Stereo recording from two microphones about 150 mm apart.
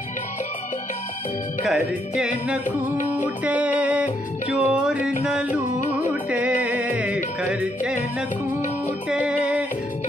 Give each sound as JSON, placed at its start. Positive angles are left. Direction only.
{"t": 1.7, "sound": "music", "side_deg": -5}
{"t": 5.5, "sound": "music", "side_deg": 55}
{"t": 6.3, "sound": "music", "side_deg": -10}
{"t": 9.1, "sound": "music", "side_deg": -5}